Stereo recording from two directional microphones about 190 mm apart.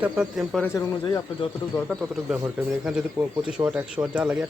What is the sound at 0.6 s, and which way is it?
Speech, 15° left (ahead or behind).